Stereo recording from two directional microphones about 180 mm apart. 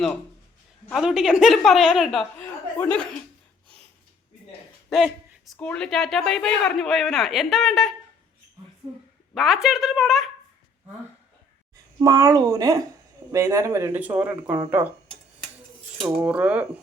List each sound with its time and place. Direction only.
0.9 s a woman's voice: centre (ahead or behind)
2.4 s speech: 10° left (ahead or behind)
4.9 s a woman's voice: centre (ahead or behind)
9.3 s a woman's voice: centre (ahead or behind)
11.9 s speech: 20° right (ahead or behind)
16.0 s speech: 10° right (ahead or behind)